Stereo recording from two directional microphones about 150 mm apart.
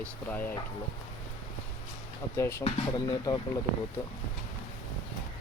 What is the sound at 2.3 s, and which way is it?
A man's voice, 20° left (ahead or behind).